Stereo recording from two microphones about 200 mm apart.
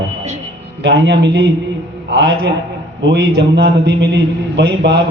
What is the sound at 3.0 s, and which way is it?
A man's voice, 55° right (ahead or behind).